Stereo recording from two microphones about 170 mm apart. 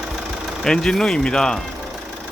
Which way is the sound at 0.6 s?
5° left (ahead or behind).